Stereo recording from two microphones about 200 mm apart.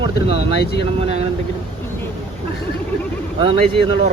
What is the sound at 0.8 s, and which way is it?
Speech, 30° right (ahead or behind).